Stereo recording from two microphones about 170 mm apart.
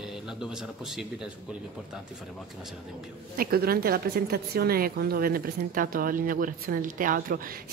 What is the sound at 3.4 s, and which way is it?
A woman's voice, 60° right (ahead or behind).